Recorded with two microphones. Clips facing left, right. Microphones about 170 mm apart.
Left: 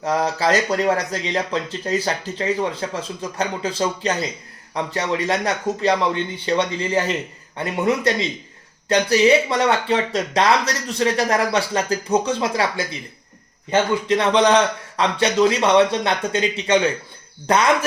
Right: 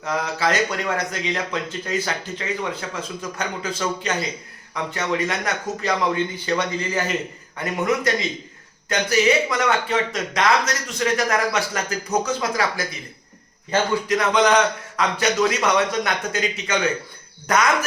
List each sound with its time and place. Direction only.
0.0 s a man's voice: 35° left (ahead or behind)